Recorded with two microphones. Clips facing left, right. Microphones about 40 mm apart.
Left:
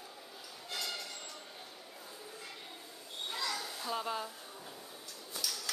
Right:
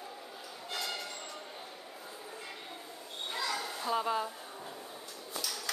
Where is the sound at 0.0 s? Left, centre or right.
Centre.